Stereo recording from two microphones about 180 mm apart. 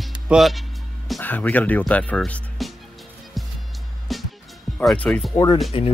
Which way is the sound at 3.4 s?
Centre (ahead or behind).